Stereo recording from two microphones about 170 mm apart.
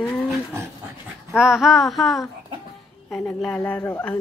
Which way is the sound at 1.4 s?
5° right (ahead or behind).